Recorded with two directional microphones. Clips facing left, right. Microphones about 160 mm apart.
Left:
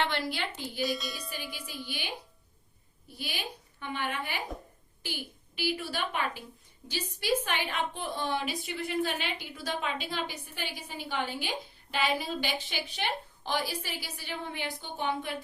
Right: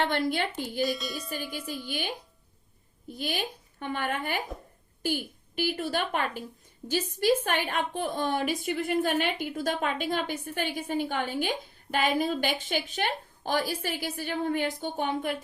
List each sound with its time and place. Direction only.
0.0 s a woman's voice: 50° right (ahead or behind)
0.8 s a woman's voice: centre (ahead or behind)
1.6 s a woman's voice: 45° right (ahead or behind)
3.2 s a woman's voice: 50° right (ahead or behind)